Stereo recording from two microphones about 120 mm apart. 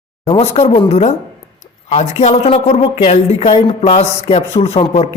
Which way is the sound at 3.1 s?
65° left (ahead or behind).